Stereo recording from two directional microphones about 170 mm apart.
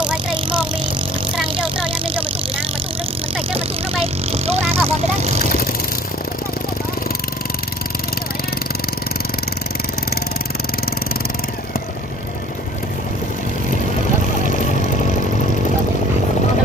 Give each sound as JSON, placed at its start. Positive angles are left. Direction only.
{"t": 1.6, "sound": "vehicle", "side_deg": -30}
{"t": 3.5, "sound": "vehicle", "side_deg": -35}